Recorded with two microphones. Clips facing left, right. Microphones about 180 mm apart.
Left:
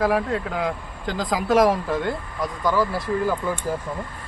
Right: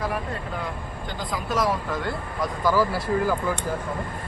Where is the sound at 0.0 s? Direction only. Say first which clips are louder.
Left 7 dB; 80° left.